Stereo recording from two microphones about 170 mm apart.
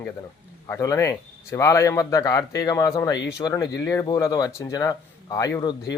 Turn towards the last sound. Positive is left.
turn(degrees=20)  # may be behind; listen again after turning